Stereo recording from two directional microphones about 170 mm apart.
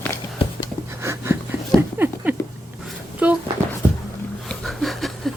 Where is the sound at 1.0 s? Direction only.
15° right (ahead or behind).